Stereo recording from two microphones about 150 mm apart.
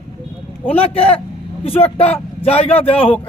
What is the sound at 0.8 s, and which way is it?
Speech, 40° left (ahead or behind).